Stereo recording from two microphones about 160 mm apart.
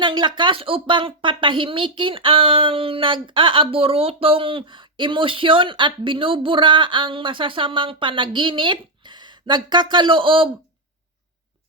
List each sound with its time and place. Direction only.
0.0 s speech: 30° right (ahead or behind)